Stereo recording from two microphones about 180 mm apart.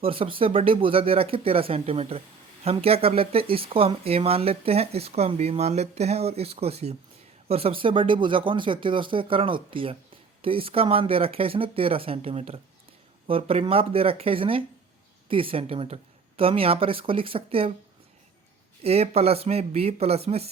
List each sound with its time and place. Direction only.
0.0 s speech: 30° right (ahead or behind)
18.8 s speech: 35° right (ahead or behind)